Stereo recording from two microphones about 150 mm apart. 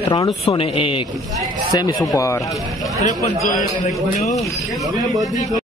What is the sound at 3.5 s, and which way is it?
Speech, 55° left (ahead or behind).